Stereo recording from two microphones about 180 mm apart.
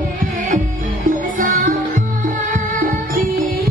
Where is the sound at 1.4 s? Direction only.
45° right (ahead or behind).